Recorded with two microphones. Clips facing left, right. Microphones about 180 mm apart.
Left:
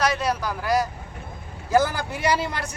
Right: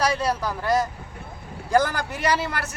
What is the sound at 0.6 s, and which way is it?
A man's voice, centre (ahead or behind).